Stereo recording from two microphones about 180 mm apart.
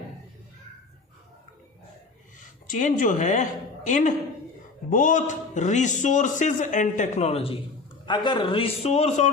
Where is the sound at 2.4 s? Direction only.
45° left (ahead or behind).